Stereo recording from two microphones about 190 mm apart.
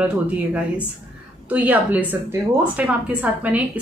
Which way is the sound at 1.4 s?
10° right (ahead or behind).